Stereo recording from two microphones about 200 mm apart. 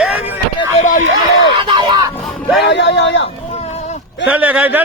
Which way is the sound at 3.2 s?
30° left (ahead or behind).